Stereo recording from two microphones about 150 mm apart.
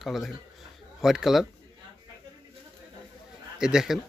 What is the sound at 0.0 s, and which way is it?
Speech, centre (ahead or behind).